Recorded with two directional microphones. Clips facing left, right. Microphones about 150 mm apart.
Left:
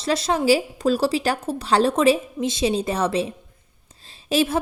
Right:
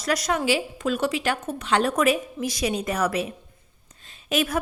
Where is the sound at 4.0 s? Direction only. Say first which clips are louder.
Left 4 dB; 30° left (ahead or behind).